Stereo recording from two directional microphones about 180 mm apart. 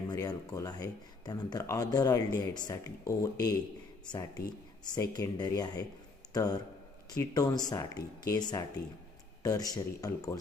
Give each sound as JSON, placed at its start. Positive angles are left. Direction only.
{"t": 0.1, "sound": "speech", "side_deg": 20}